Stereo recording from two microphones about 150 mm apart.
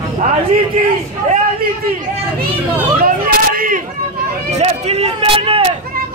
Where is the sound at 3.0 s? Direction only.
70° right (ahead or behind).